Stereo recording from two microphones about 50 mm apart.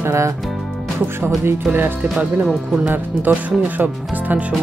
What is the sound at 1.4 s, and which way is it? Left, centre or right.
Speech, right.